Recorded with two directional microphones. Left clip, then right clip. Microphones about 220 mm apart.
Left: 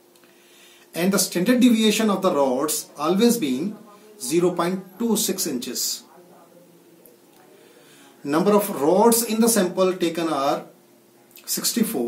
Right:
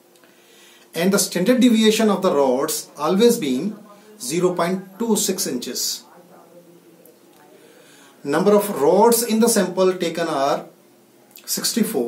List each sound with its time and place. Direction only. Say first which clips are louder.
0.9 s speech: right 3 dB; 5° right (ahead or behind)
8.2 s speech: right 3 dB; centre (ahead or behind)